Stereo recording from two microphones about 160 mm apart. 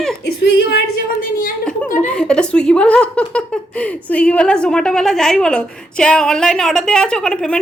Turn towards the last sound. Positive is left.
turn(degrees=5)  # may be behind; listen again after turning